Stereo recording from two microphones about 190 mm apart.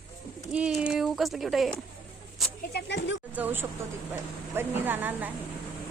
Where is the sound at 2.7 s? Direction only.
60° left (ahead or behind).